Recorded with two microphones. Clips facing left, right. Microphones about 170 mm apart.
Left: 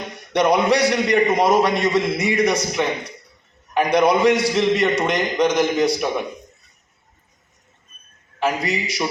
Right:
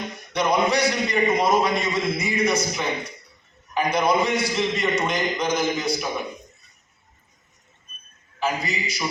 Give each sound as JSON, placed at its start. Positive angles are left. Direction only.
{"t": 0.3, "sound": "a man's voice", "side_deg": 75}
{"t": 8.4, "sound": "a man's voice", "side_deg": 75}